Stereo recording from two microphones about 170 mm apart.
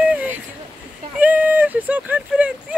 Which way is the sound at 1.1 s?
10° right (ahead or behind).